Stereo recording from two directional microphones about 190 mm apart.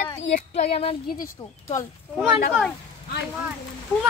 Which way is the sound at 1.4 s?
15° left (ahead or behind).